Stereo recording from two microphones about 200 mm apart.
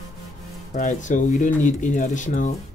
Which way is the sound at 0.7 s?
40° left (ahead or behind).